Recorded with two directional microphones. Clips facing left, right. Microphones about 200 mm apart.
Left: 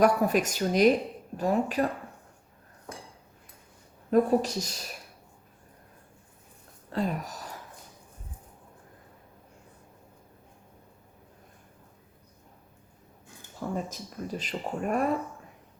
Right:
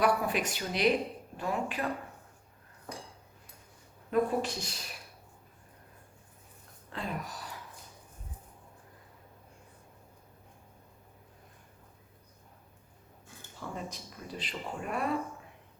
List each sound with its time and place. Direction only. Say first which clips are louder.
0.0 s a woman's voice: left 6 dB; 45° left (ahead or behind)
4.1 s a woman's voice: left 6 dB; 40° left (ahead or behind)
6.9 s speech: left 7 dB; 40° left (ahead or behind)
13.6 s speech: left 7 dB; 45° left (ahead or behind)